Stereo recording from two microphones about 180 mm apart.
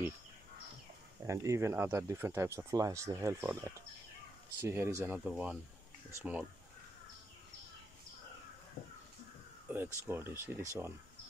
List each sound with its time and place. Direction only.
1.2 s speech: 15° right (ahead or behind)
9.7 s speech: 10° right (ahead or behind)